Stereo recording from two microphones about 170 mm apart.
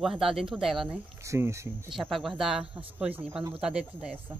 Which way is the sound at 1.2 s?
15° right (ahead or behind).